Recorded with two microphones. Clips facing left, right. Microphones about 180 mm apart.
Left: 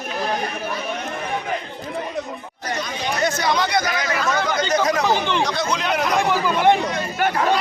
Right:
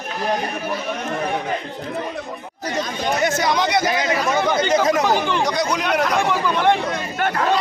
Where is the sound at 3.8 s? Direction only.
25° right (ahead or behind).